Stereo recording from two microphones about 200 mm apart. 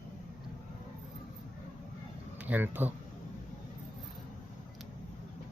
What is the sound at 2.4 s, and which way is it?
Speech, 10° right (ahead or behind).